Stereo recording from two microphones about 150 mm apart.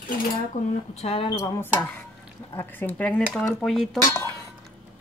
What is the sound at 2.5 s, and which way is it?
Speech, 15° left (ahead or behind).